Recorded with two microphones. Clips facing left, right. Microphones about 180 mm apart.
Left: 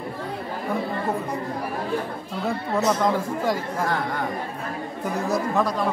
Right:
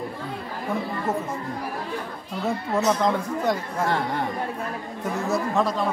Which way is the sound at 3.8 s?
25° right (ahead or behind).